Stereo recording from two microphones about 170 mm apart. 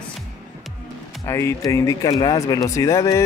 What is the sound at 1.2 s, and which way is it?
Speech, 15° left (ahead or behind).